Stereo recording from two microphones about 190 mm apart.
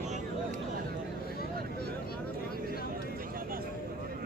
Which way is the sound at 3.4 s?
50° right (ahead or behind).